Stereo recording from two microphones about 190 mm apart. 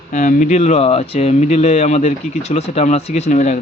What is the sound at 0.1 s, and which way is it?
Speech, 45° left (ahead or behind).